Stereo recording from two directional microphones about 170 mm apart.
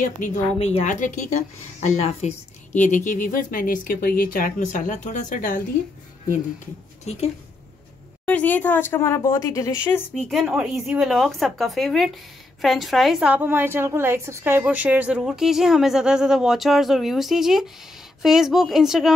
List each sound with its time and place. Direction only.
0.0 s a woman's voice: 45° left (ahead or behind)
8.3 s speech: 10° left (ahead or behind)
10.1 s a woman's voice: centre (ahead or behind)